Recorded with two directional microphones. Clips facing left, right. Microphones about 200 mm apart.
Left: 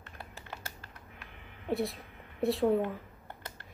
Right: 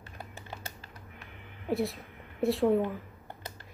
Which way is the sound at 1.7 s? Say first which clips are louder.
Right 2 dB; centre (ahead or behind).